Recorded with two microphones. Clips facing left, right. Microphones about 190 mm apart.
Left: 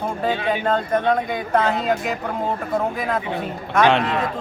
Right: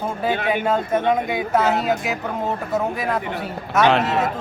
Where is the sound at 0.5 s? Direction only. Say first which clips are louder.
Even; 5° right (ahead or behind).